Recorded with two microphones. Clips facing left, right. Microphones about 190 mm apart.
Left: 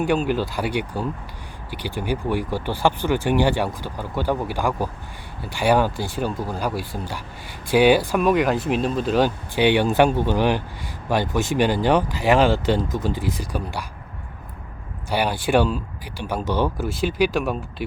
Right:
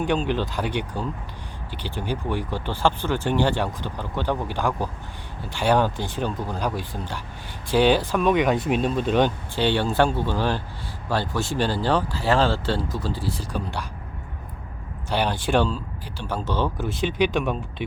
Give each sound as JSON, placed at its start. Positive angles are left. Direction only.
{"t": 0.0, "sound": "speech", "side_deg": 10}
{"t": 15.1, "sound": "speech", "side_deg": 10}